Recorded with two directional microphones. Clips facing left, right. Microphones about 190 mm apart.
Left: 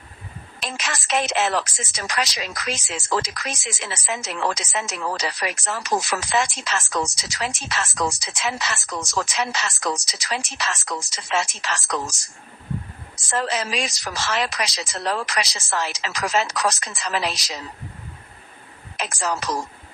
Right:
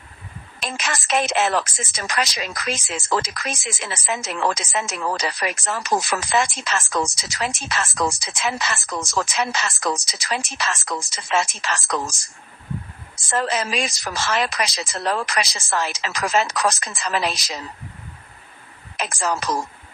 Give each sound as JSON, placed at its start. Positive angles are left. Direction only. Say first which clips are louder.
{"t": 0.6, "sound": "a woman's voice", "louder": "right 2 dB", "side_deg": -55}
{"t": 18.9, "sound": "speech", "louder": "right 2 dB", "side_deg": -50}